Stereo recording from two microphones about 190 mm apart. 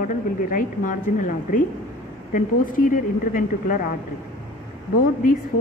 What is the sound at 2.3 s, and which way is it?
Speech, 45° left (ahead or behind).